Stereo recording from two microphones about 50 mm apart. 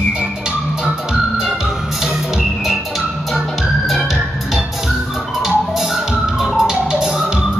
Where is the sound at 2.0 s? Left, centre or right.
Centre.